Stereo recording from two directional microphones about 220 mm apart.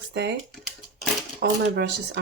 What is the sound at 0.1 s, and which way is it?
Speech, 50° right (ahead or behind).